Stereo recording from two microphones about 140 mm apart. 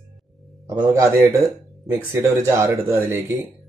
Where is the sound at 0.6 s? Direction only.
25° right (ahead or behind).